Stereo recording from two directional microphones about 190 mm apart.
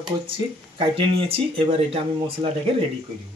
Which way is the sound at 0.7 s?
30° right (ahead or behind).